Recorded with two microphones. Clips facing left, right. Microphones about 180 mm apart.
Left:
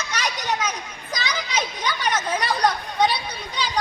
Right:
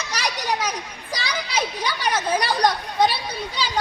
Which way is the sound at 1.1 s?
10° right (ahead or behind).